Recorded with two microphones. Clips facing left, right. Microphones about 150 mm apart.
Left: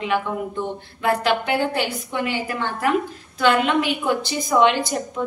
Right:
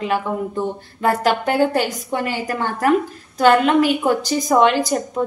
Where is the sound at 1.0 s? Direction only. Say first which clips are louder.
Right 3 dB; 45° right (ahead or behind).